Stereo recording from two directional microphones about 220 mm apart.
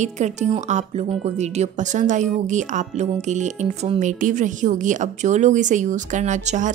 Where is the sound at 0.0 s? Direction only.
30° right (ahead or behind).